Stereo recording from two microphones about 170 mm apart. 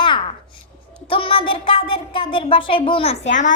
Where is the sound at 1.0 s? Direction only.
30° left (ahead or behind).